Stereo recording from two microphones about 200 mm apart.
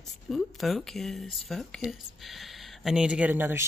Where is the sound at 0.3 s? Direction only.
Centre (ahead or behind).